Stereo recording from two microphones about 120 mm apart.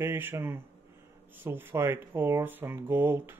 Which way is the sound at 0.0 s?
20° right (ahead or behind).